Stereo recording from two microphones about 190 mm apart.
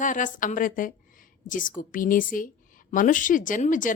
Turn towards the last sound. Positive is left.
turn(degrees=45)  # may be behind; listen again after turning